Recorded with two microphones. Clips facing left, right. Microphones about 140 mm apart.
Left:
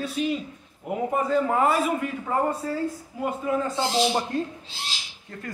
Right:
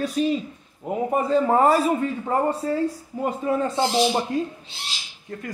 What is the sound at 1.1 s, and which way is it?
Speech, 30° right (ahead or behind).